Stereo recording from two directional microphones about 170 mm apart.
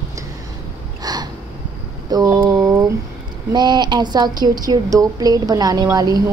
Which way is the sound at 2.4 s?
20° right (ahead or behind).